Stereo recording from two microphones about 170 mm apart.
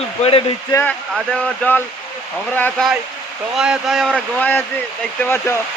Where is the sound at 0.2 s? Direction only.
35° left (ahead or behind).